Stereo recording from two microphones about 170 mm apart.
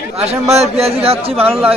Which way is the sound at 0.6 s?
35° right (ahead or behind).